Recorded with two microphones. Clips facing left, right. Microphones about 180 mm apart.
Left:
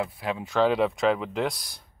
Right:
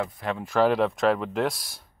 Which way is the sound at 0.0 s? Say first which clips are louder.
Even; 5° left (ahead or behind).